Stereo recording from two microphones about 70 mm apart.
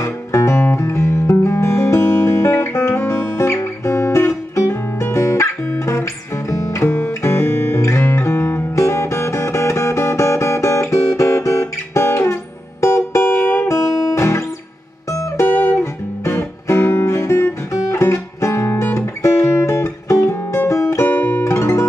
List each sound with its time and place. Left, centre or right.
0.0 s music: left
7.0 s guitar: left
12.8 s music: left
15.6 s guitar: left